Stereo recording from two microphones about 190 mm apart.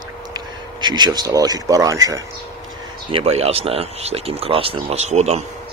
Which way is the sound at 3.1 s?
30° right (ahead or behind).